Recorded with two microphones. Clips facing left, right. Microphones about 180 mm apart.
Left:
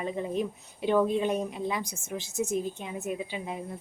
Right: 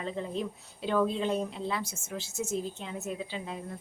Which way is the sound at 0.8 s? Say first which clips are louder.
Left 3 dB; 15° left (ahead or behind).